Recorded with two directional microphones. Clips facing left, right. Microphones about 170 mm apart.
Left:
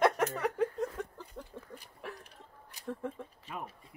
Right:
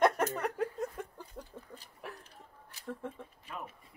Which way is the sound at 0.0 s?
Centre (ahead or behind).